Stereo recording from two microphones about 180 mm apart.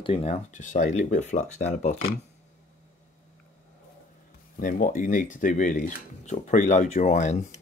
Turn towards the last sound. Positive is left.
turn(degrees=40)  # may be behind; listen again after turning